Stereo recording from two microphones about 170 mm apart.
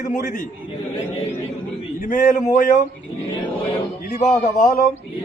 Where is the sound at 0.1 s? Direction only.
50° left (ahead or behind).